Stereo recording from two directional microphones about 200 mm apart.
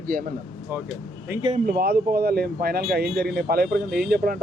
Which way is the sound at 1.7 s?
50° right (ahead or behind).